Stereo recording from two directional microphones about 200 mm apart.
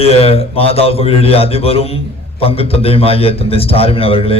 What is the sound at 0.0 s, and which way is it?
A man's voice, 30° left (ahead or behind).